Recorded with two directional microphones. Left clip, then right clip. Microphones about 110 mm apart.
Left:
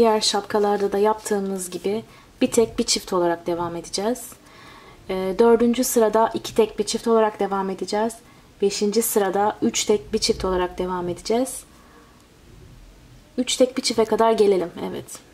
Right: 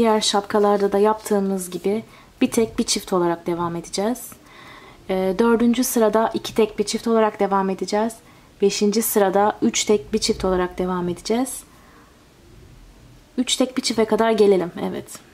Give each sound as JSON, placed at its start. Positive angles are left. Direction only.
{"t": 0.0, "sound": "a woman's voice", "side_deg": -40}
{"t": 10.1, "sound": "speech", "side_deg": -35}
{"t": 13.4, "sound": "speech", "side_deg": -40}